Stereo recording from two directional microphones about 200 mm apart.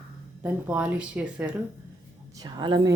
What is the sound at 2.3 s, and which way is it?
Speech, 20° right (ahead or behind).